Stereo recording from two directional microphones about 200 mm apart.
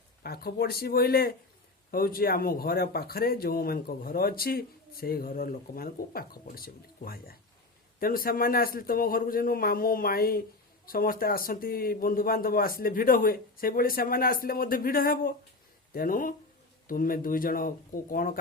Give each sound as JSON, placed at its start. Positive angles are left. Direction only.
{"t": 0.2, "sound": "speech", "side_deg": 50}